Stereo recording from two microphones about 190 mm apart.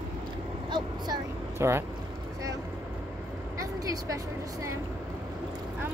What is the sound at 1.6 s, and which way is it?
Speech, 15° right (ahead or behind).